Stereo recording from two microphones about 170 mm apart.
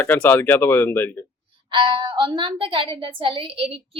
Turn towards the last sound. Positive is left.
turn(degrees=-35)  # may be behind; listen again after turning